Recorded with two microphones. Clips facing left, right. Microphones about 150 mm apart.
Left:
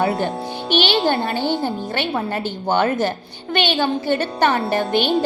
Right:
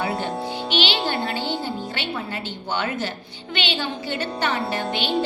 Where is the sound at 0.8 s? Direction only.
50° left (ahead or behind).